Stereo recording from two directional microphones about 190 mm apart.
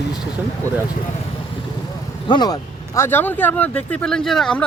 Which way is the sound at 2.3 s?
20° left (ahead or behind).